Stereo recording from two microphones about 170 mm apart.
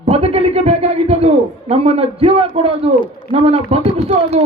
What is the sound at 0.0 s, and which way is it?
A man's voice, 40° right (ahead or behind).